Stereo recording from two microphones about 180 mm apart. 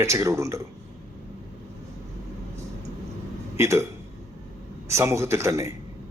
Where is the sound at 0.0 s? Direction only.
15° right (ahead or behind).